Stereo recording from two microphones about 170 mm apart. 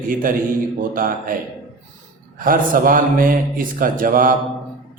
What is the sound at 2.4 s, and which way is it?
A man's voice, 55° right (ahead or behind).